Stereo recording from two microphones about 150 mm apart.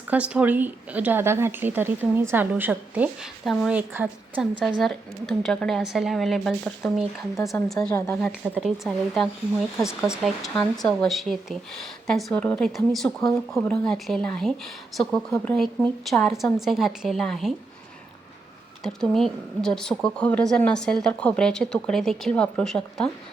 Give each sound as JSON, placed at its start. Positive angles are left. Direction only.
{"t": 0.1, "sound": "a woman's voice", "side_deg": -10}
{"t": 3.4, "sound": "speech", "side_deg": 0}
{"t": 3.8, "sound": "a woman's voice", "side_deg": -10}
{"t": 4.8, "sound": "speech", "side_deg": 0}
{"t": 7.9, "sound": "a woman's voice", "side_deg": 20}
{"t": 8.2, "sound": "speech", "side_deg": -5}
{"t": 18.8, "sound": "speech", "side_deg": 5}